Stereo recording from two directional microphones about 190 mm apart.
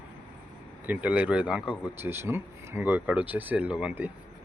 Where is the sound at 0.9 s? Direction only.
5° right (ahead or behind).